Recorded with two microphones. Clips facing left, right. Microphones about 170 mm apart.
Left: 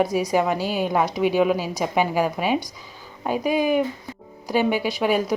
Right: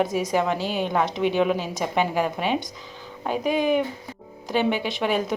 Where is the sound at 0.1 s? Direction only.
45° right (ahead or behind).